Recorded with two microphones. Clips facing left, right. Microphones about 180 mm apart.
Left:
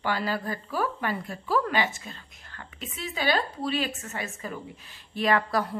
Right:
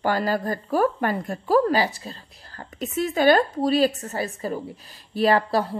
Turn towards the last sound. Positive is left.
turn(degrees=-30)  # may be behind; listen again after turning